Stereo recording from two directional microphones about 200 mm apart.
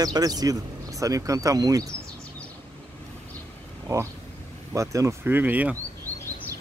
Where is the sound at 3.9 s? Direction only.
15° right (ahead or behind).